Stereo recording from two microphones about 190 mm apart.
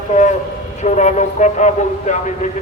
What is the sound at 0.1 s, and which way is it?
A man's voice, 40° left (ahead or behind).